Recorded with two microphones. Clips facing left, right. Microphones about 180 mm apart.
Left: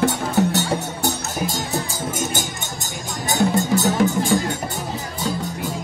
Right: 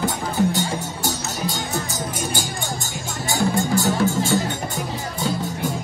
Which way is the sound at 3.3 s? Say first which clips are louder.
Left 2 dB; 20° left (ahead or behind).